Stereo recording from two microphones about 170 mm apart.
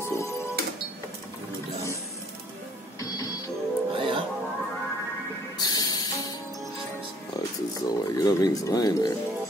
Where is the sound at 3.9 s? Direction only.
30° right (ahead or behind).